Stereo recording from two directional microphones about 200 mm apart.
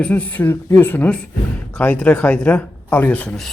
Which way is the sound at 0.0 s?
10° left (ahead or behind).